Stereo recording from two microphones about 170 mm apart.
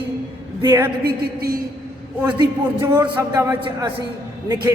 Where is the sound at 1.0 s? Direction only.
65° right (ahead or behind).